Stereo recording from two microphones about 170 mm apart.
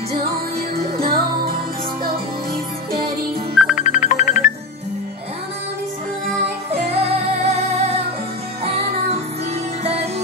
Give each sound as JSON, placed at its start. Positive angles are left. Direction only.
{"t": 3.5, "sound": "music", "side_deg": -5}
{"t": 3.8, "sound": "music", "side_deg": 50}
{"t": 6.9, "sound": "music", "side_deg": -35}